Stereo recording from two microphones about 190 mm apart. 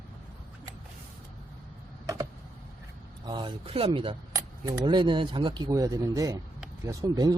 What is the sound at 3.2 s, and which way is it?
Speech, 25° right (ahead or behind).